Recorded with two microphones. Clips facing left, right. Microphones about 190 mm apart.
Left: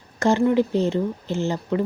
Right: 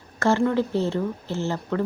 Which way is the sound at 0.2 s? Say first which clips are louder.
Left 3 dB; 15° left (ahead or behind).